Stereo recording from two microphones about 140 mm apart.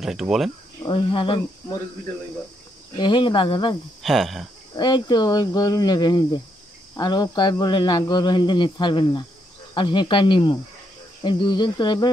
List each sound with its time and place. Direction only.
0.0 s speech: centre (ahead or behind)
0.8 s speech: 35° left (ahead or behind)
3.0 s speech: 35° left (ahead or behind)
4.0 s speech: centre (ahead or behind)
4.7 s speech: 30° left (ahead or behind)